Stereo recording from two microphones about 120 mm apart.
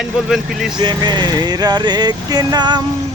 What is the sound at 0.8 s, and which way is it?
Speech, 40° right (ahead or behind).